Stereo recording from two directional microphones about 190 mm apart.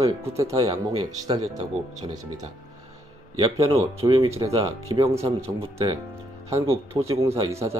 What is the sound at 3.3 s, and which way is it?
Speech, 20° right (ahead or behind).